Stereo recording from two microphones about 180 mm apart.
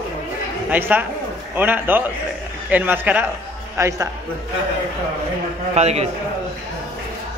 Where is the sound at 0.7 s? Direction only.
10° right (ahead or behind).